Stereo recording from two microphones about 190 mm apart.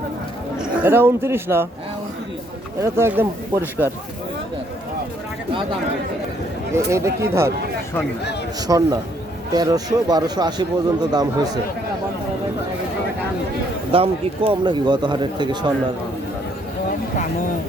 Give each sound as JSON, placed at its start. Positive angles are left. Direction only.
{"t": 0.8, "sound": "speech", "side_deg": -10}
{"t": 2.8, "sound": "speech", "side_deg": -15}
{"t": 6.7, "sound": "speech", "side_deg": -15}
{"t": 8.6, "sound": "speech", "side_deg": -20}
{"t": 13.9, "sound": "speech", "side_deg": -30}